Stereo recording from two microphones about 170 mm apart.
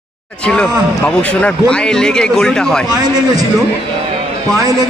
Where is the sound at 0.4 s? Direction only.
5° left (ahead or behind).